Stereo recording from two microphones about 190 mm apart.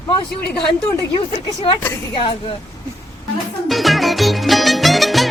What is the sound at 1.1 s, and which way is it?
Speech, 30° left (ahead or behind).